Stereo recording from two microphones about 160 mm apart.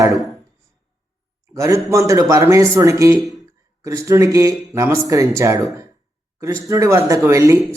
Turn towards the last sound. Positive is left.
turn(degrees=-20)  # may be behind; listen again after turning